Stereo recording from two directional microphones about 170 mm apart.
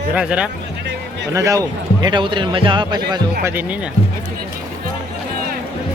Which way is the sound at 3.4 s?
10° right (ahead or behind).